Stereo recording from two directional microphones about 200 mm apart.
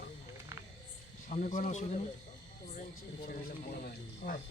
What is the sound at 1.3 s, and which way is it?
Speech, 40° left (ahead or behind).